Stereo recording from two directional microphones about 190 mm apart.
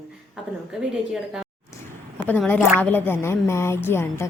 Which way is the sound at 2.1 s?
10° left (ahead or behind).